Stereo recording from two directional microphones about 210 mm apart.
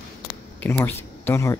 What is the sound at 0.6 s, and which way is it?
Speech, 10° left (ahead or behind).